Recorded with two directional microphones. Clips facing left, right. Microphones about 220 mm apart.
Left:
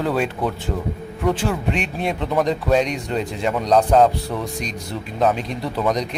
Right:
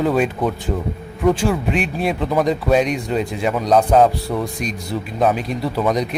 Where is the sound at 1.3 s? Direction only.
10° right (ahead or behind).